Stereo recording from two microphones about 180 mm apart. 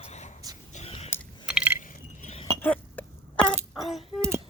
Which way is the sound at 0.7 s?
35° left (ahead or behind).